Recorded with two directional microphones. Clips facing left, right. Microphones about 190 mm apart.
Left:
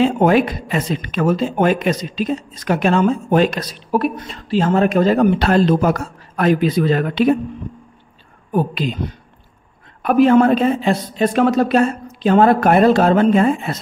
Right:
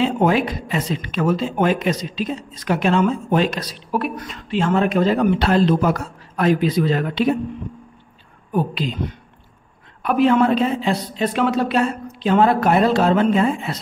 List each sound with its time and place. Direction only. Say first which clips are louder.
0.0 s speech: left 4 dB; 50° left (ahead or behind)
4.2 s speech: left 3 dB; 35° left (ahead or behind); by 7.3 s 55° left (ahead or behind)
10.0 s speech: left 4 dB; 45° left (ahead or behind)